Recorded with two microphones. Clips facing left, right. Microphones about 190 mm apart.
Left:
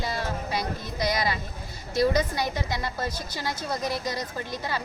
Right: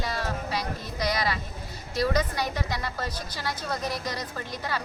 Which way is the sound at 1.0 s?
15° left (ahead or behind).